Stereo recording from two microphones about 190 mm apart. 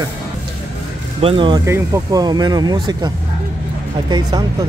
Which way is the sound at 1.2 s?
25° right (ahead or behind).